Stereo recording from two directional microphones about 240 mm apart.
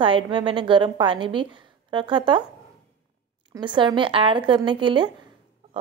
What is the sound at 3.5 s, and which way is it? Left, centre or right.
Speech, centre.